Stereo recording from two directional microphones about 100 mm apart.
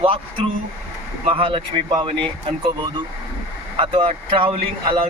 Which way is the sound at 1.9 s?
50° right (ahead or behind).